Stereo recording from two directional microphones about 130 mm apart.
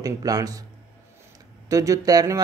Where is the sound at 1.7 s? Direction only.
25° right (ahead or behind).